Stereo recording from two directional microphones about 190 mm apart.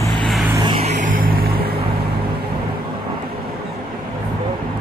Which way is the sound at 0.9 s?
45° right (ahead or behind).